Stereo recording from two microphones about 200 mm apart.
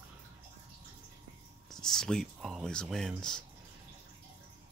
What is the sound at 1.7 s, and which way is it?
Speech, centre (ahead or behind).